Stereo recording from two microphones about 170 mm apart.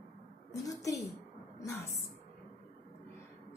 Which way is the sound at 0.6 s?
20° left (ahead or behind).